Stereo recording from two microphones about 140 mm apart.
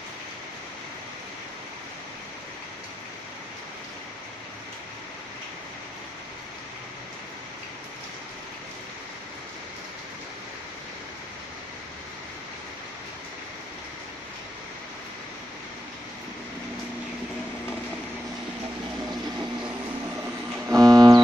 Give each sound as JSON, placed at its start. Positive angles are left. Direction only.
{"t": 20.7, "sound": "music", "side_deg": -25}